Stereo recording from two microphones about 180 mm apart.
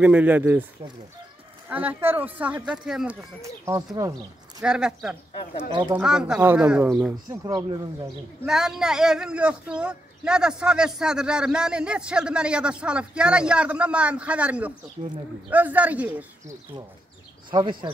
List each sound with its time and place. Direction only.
0.0 s speech: 10° right (ahead or behind)
1.7 s speech: 10° right (ahead or behind)
3.2 s speech: 15° right (ahead or behind)
4.6 s speech: 5° right (ahead or behind)
5.7 s speech: 25° right (ahead or behind)
5.9 s speech: 5° right (ahead or behind)
7.2 s speech: 20° right (ahead or behind)
8.5 s speech: 5° right (ahead or behind)
15.0 s speech: 40° right (ahead or behind)
15.5 s speech: 10° right (ahead or behind)
17.5 s speech: 25° right (ahead or behind)